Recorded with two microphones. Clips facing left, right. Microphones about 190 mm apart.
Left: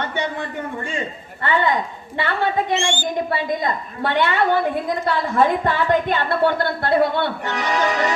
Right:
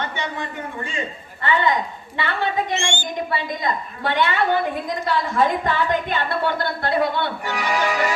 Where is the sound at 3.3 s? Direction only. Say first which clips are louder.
Left 2 dB; 50° left (ahead or behind).